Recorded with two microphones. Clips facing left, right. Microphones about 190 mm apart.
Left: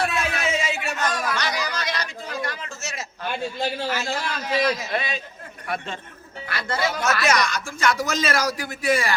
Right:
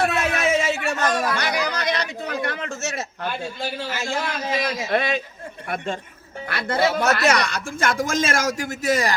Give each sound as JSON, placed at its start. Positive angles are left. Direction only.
{"t": 0.0, "sound": "a sound", "side_deg": -60}
{"t": 0.9, "sound": "speech", "side_deg": -35}
{"t": 1.4, "sound": "chatter", "side_deg": -60}
{"t": 2.4, "sound": "a sound", "side_deg": -55}
{"t": 4.1, "sound": "a man's voice", "side_deg": -25}
{"t": 4.9, "sound": "speech", "side_deg": -55}